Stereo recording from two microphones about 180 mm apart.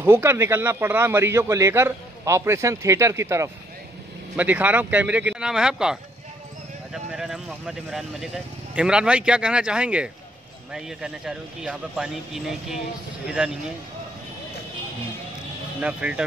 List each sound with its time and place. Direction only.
0.0 s a man's voice: 10° right (ahead or behind)
15.8 s a man's voice: 5° right (ahead or behind)